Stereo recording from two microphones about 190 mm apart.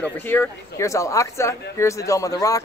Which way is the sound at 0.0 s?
10° left (ahead or behind).